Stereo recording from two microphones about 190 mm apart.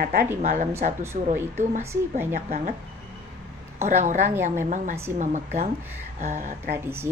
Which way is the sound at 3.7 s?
35° right (ahead or behind).